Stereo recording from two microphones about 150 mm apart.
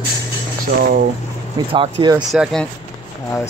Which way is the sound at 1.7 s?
30° right (ahead or behind).